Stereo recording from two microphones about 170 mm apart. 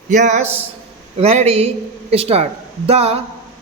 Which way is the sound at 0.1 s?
45° right (ahead or behind).